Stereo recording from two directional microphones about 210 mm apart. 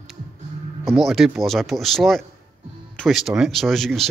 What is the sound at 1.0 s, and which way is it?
Speech, centre (ahead or behind).